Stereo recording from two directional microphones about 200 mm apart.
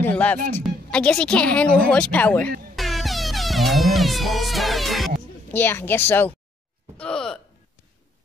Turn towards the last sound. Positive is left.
turn(degrees=5)  # may be behind; listen again after turning